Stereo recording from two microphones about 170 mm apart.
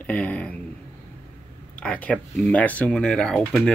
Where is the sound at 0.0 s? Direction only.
10° left (ahead or behind).